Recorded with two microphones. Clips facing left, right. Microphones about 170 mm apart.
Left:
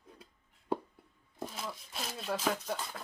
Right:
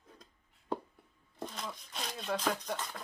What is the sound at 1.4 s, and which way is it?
Speech, 5° left (ahead or behind).